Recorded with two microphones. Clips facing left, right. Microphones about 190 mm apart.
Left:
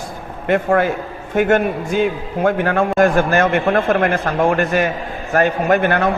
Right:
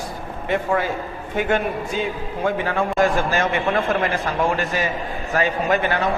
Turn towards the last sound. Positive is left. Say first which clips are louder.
# left 5 dB
turn(degrees=55)  # may be behind; listen again after turning